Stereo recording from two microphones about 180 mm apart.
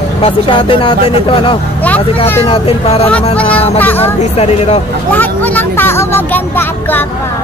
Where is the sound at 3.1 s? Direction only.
10° left (ahead or behind).